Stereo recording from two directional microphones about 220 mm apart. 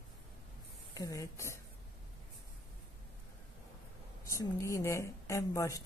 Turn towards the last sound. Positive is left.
turn(degrees=15)  # may be behind; listen again after turning